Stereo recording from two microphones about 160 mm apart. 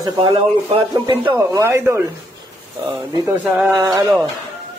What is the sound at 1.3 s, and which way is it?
Speech, 15° right (ahead or behind).